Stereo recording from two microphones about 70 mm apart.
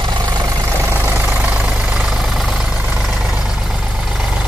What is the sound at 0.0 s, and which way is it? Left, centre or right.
Vehicle, right.